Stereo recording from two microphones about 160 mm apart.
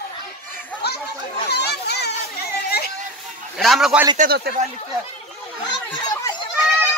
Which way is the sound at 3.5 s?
Centre (ahead or behind).